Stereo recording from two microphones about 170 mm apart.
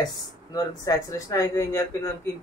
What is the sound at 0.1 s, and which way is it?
Speech, 20° left (ahead or behind).